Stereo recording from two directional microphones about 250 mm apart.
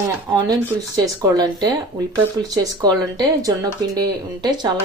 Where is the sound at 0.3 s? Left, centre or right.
Centre.